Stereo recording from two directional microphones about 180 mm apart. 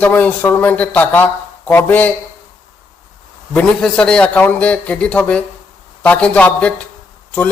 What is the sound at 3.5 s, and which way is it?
Speech, 5° left (ahead or behind).